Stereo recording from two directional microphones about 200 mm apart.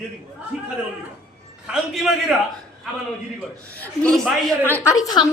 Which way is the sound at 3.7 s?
5° left (ahead or behind).